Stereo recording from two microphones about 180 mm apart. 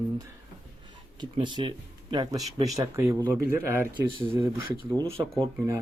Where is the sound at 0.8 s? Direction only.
25° right (ahead or behind).